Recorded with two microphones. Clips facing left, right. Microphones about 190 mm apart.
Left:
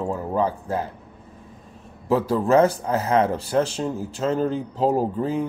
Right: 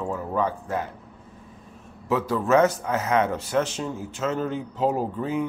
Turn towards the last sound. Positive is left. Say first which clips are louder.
# left 3 dB
turn(degrees=35)  # may be behind; listen again after turning